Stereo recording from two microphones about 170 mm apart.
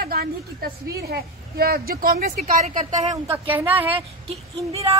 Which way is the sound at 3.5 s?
10° right (ahead or behind).